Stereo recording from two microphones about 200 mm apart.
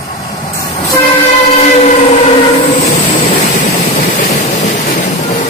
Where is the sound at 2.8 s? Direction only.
35° left (ahead or behind).